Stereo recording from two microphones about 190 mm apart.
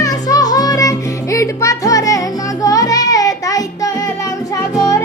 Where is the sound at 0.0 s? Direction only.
20° left (ahead or behind).